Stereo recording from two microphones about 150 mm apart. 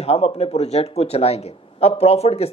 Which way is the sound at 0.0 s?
40° left (ahead or behind).